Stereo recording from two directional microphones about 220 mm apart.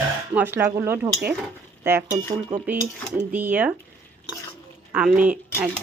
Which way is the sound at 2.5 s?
35° right (ahead or behind).